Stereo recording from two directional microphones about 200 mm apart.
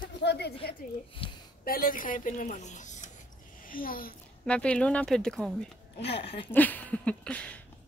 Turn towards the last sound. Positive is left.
turn(degrees=5)  # may be behind; listen again after turning